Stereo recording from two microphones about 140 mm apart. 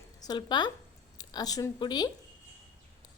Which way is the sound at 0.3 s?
30° left (ahead or behind).